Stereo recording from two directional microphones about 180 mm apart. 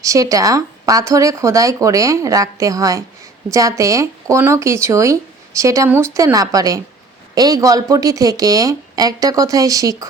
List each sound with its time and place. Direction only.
0.0 s speech: 20° right (ahead or behind)